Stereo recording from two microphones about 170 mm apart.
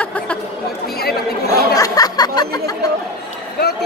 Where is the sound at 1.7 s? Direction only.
20° left (ahead or behind).